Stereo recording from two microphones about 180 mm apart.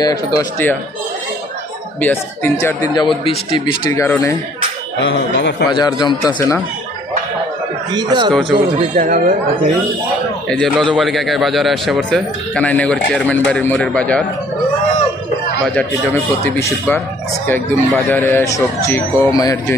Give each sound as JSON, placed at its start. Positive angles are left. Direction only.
{"t": 0.0, "sound": "speech", "side_deg": 20}
{"t": 2.0, "sound": "speech", "side_deg": 10}
{"t": 5.1, "sound": "speech", "side_deg": 70}
{"t": 5.7, "sound": "speech", "side_deg": 25}
{"t": 7.9, "sound": "a man's voice", "side_deg": -25}
{"t": 8.9, "sound": "speech", "side_deg": -50}
{"t": 10.5, "sound": "a man's voice", "side_deg": 5}
{"t": 15.6, "sound": "speech", "side_deg": 5}